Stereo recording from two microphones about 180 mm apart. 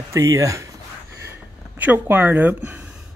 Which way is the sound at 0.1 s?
15° right (ahead or behind).